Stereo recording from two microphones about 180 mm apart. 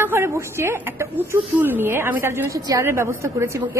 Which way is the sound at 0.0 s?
15° right (ahead or behind).